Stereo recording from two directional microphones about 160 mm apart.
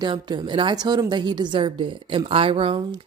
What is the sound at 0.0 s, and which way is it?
A woman's voice, 30° right (ahead or behind).